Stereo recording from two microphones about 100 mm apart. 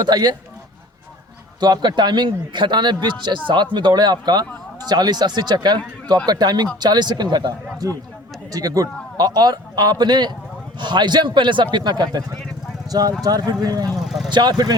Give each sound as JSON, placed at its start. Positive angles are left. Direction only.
{"t": 0.0, "sound": "a man's voice", "side_deg": -45}
{"t": 1.6, "sound": "a man's voice", "side_deg": -45}
{"t": 7.8, "sound": "a man's voice", "side_deg": -35}